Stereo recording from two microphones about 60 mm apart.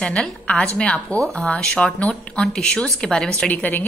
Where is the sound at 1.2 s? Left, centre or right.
Centre.